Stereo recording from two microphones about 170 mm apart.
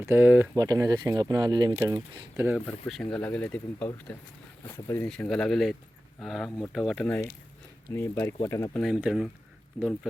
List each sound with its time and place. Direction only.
0.0 s speech: 10° right (ahead or behind)
2.8 s speech: 5° left (ahead or behind)
5.0 s speech: 5° left (ahead or behind)
8.8 s speech: centre (ahead or behind)